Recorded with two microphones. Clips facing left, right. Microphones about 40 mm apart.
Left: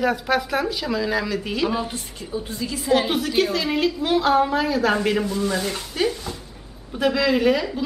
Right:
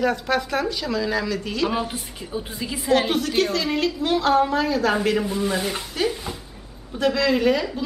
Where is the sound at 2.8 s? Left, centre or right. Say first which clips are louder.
Even; centre.